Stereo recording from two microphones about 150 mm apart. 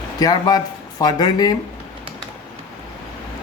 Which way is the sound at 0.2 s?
25° left (ahead or behind).